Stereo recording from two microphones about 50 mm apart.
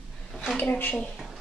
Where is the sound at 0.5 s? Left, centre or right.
Left.